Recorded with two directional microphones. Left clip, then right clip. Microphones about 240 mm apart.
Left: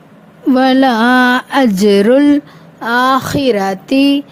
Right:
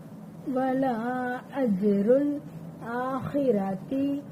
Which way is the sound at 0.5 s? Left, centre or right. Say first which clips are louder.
Left 16 dB; left.